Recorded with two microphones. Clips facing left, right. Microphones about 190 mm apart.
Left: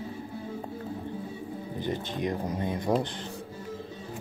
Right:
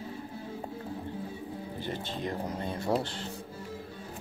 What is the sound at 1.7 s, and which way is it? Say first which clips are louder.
Speech: left 6 dB; 15° left (ahead or behind).